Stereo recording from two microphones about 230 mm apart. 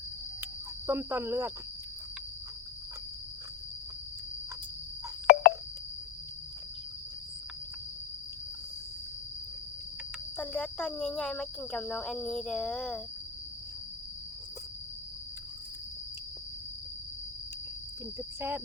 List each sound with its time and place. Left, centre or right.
0.9 s speech: centre
5.2 s a sound: left
10.3 s speech: centre
18.3 s cricket: centre